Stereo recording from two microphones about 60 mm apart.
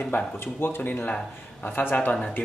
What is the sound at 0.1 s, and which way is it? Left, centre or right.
Speech, left.